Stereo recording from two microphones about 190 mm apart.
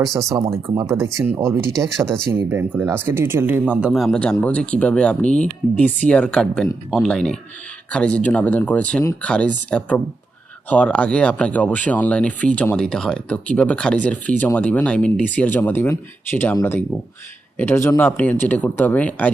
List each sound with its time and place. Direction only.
0.3 s speech: 15° right (ahead or behind)
1.7 s speech: centre (ahead or behind)
2.5 s speech: 10° right (ahead or behind); by 19.3 s 5° left (ahead or behind)